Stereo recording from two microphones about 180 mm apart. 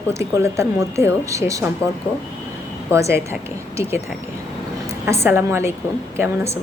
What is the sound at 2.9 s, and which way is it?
Speech, 15° right (ahead or behind).